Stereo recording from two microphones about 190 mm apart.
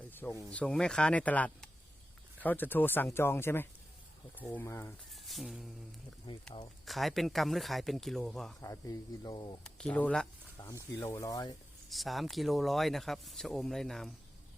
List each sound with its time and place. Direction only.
0.2 s speech: 15° left (ahead or behind)
0.6 s speech: 5° left (ahead or behind)
5.1 s speech: centre (ahead or behind)
6.3 s speech: 25° left (ahead or behind)
6.8 s speech: centre (ahead or behind)
8.6 s speech: 15° left (ahead or behind)
9.6 s speech: 5° left (ahead or behind)
11.9 s speech: centre (ahead or behind)